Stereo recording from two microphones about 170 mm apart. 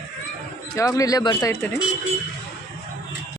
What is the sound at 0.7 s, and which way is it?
Speech, 20° left (ahead or behind).